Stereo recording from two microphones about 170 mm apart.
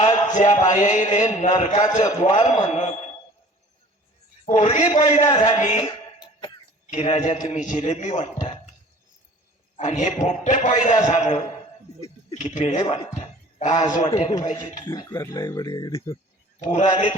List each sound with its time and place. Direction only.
0.0 s a man's voice: 45° left (ahead or behind)
4.4 s a man's voice: 40° left (ahead or behind)
6.9 s a man's voice: 40° left (ahead or behind)
9.7 s a man's voice: 45° left (ahead or behind)
14.8 s speech: 20° left (ahead or behind)
16.6 s a man's voice: 40° left (ahead or behind)